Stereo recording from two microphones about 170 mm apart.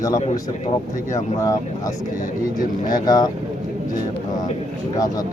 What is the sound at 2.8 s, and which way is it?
Speech, 20° left (ahead or behind).